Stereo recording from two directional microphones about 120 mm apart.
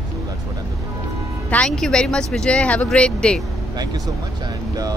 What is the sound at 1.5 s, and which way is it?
Speech, 10° left (ahead or behind).